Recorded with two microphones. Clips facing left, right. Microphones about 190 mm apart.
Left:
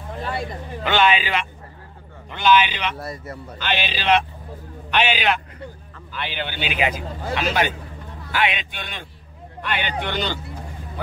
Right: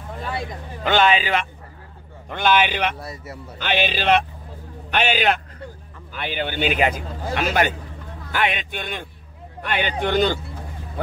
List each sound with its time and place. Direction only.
0.8 s a man's voice: 40° right (ahead or behind)
3.0 s a man's voice: centre (ahead or behind)
3.5 s a man's voice: 50° right (ahead or behind)